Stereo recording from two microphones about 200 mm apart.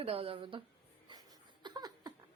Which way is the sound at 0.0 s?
30° right (ahead or behind).